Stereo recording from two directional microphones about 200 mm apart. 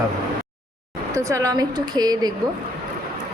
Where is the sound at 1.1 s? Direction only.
15° right (ahead or behind).